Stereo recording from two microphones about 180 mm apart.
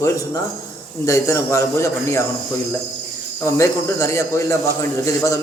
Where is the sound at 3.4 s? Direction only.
15° left (ahead or behind).